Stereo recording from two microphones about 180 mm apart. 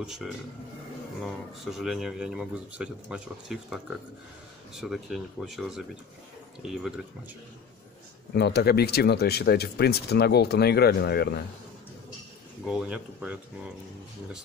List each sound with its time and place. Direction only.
0.0 s speech: centre (ahead or behind)
8.3 s speech: 65° left (ahead or behind)
12.6 s speech: 5° right (ahead or behind)